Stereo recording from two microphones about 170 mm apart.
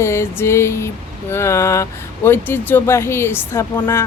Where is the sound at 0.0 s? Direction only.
15° left (ahead or behind).